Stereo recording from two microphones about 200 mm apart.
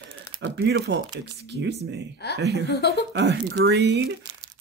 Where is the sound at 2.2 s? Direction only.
55° left (ahead or behind).